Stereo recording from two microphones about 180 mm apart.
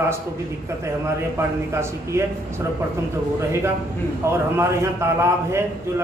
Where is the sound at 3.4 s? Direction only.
15° right (ahead or behind).